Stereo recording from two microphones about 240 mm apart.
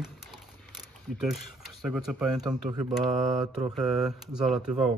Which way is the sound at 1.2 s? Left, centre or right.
Centre.